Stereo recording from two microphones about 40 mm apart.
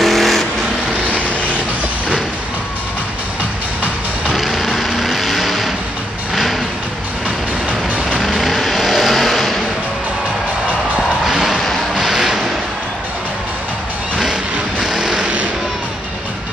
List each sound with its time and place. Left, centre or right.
0.0 s vehicle: centre
1.0 s vehicle: right
4.3 s vehicle: centre
8.2 s vehicle: centre
11.2 s music: centre
11.9 s a sound: centre
14.8 s vehicle: centre